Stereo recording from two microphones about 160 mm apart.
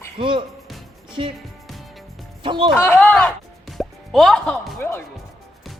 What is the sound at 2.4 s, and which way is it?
Speech, 30° right (ahead or behind).